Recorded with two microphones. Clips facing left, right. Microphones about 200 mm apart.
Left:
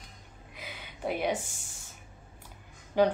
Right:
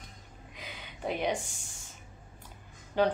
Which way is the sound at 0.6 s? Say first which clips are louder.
Left 2 dB; 10° left (ahead or behind).